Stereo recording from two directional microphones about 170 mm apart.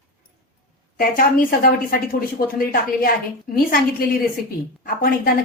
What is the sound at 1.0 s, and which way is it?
A woman's voice, 60° left (ahead or behind).